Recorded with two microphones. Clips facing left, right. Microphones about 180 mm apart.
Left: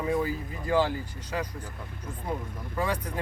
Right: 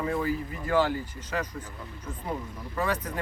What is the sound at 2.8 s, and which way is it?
Speech, 15° left (ahead or behind).